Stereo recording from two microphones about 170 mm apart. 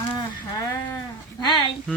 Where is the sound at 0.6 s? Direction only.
20° left (ahead or behind).